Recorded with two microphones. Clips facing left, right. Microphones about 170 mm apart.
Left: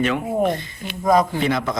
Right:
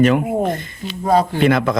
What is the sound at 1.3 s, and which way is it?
Speech, 60° right (ahead or behind).